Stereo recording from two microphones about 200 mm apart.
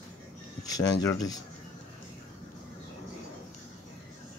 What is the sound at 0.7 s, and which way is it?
Speech, 20° left (ahead or behind).